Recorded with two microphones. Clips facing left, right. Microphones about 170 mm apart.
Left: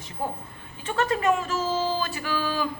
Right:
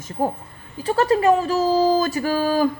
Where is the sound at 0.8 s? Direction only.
35° right (ahead or behind).